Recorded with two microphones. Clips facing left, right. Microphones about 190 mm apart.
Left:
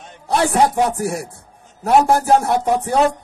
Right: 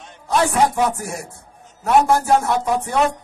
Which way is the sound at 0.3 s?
35° left (ahead or behind).